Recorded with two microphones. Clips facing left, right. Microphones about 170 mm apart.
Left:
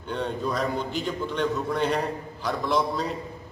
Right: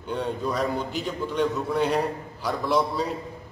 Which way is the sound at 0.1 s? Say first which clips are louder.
Right 1 dB; 5° right (ahead or behind).